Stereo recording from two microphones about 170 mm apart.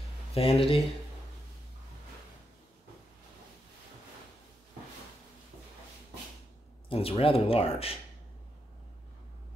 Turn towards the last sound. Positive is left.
turn(degrees=35)  # may be behind; listen again after turning